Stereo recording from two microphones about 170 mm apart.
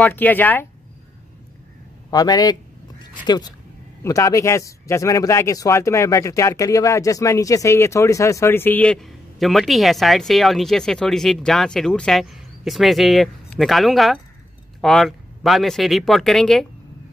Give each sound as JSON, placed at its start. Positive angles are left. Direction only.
{"t": 0.0, "sound": "speech", "side_deg": 10}
{"t": 2.0, "sound": "a man's voice", "side_deg": 20}
{"t": 3.0, "sound": "a sound", "side_deg": 25}
{"t": 4.0, "sound": "speech", "side_deg": 20}